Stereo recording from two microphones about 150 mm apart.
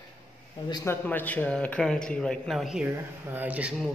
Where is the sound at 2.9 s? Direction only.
15° right (ahead or behind).